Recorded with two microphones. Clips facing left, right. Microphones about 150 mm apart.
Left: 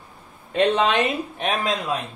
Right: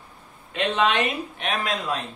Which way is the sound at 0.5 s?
40° left (ahead or behind).